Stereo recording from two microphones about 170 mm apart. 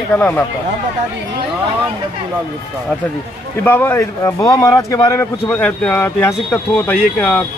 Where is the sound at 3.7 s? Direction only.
15° left (ahead or behind).